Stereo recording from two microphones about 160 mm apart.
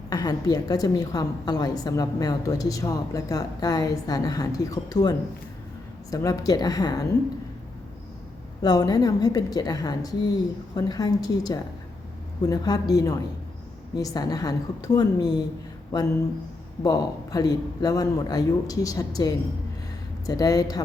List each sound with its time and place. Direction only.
0.1 s a woman's voice: 25° left (ahead or behind)
8.6 s a woman's voice: 25° left (ahead or behind)